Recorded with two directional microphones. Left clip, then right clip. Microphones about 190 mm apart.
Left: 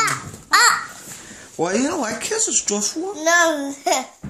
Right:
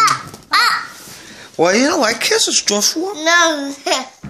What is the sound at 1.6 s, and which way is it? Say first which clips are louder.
Speech: right 8 dB; 30° right (ahead or behind).